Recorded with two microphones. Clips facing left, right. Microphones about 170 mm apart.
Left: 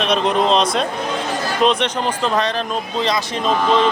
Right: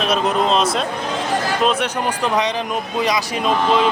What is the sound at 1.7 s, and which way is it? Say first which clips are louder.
Speech: left 4 dB; 5° right (ahead or behind).